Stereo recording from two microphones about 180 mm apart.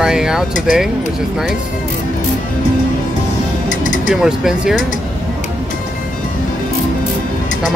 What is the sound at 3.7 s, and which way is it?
Music, 45° left (ahead or behind).